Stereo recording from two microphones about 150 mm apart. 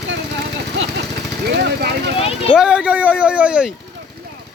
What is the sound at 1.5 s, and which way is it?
Speech, 90° right.